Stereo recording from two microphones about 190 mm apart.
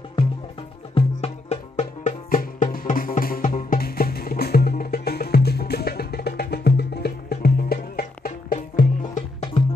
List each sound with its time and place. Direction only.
0.9 s music: 35° left (ahead or behind)